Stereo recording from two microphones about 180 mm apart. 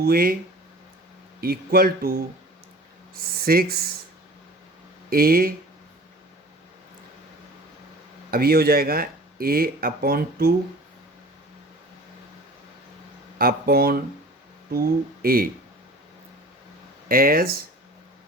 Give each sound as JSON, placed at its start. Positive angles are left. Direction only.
{"t": 0.0, "sound": "speech", "side_deg": -55}
{"t": 1.4, "sound": "speech", "side_deg": -60}
{"t": 3.2, "sound": "speech", "side_deg": -55}
{"t": 5.0, "sound": "speech", "side_deg": -55}
{"t": 8.3, "sound": "speech", "side_deg": -60}
{"t": 13.4, "sound": "speech", "side_deg": -55}
{"t": 15.2, "sound": "speech", "side_deg": -55}
{"t": 17.1, "sound": "speech", "side_deg": -55}